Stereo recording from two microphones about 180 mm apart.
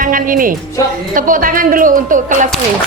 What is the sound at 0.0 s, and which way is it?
A woman's voice, 50° right (ahead or behind).